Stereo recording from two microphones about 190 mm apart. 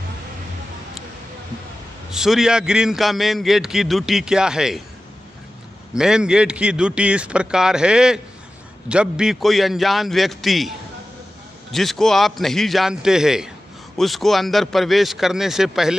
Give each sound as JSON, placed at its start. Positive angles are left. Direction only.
{"t": 2.0, "sound": "a man's voice", "side_deg": 0}
{"t": 5.9, "sound": "a man's voice", "side_deg": -5}
{"t": 11.7, "sound": "a man's voice", "side_deg": 0}